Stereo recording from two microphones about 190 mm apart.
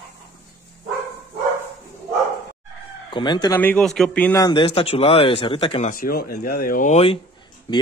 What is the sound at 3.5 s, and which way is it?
Speech, 10° left (ahead or behind).